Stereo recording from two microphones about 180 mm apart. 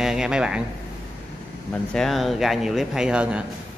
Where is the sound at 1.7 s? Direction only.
5° left (ahead or behind).